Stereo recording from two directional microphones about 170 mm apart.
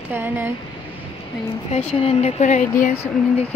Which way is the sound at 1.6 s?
35° left (ahead or behind).